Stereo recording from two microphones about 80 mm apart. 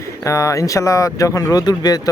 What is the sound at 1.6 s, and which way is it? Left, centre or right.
Speech, left.